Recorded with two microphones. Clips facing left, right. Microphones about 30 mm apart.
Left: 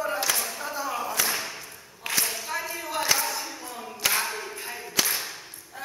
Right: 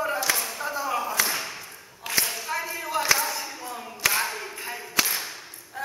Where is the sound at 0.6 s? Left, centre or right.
Right.